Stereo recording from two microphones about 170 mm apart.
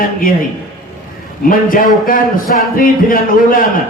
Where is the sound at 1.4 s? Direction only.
55° left (ahead or behind).